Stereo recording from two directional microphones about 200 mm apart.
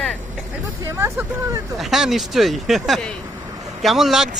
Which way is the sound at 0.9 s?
15° right (ahead or behind).